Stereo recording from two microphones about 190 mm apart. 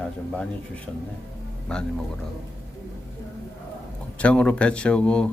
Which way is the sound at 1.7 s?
5° left (ahead or behind).